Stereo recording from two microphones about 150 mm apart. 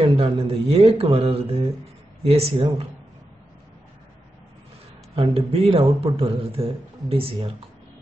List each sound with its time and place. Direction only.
0.0 s speech: 40° right (ahead or behind)
5.1 s speech: 40° right (ahead or behind)